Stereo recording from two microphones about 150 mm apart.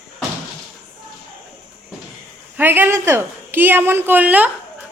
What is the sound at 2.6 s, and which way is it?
Speech, 15° right (ahead or behind).